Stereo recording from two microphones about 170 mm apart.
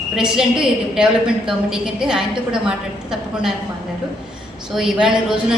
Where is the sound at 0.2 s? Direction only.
5° right (ahead or behind).